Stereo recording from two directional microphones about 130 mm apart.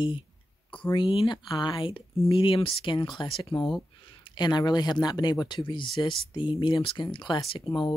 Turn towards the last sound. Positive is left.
turn(degrees=40)  # may be behind; listen again after turning